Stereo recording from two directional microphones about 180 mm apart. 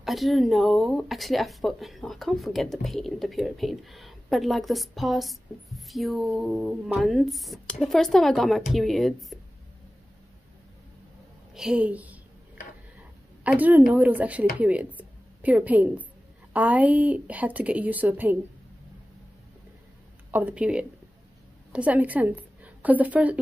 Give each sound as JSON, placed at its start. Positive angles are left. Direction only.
{"t": 0.0, "sound": "speech", "side_deg": 0}
{"t": 11.5, "sound": "a woman's voice", "side_deg": -5}
{"t": 13.4, "sound": "a woman's voice", "side_deg": -10}
{"t": 20.2, "sound": "a woman's voice", "side_deg": -10}